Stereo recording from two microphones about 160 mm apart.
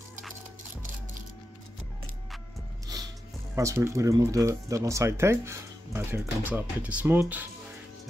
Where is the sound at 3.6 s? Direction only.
20° right (ahead or behind).